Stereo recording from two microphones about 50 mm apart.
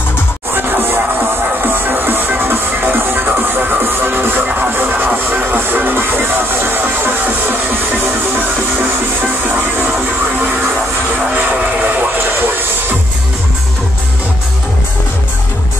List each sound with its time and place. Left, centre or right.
0.6 s music: right
11.3 s vehicle: right
12.2 s train: right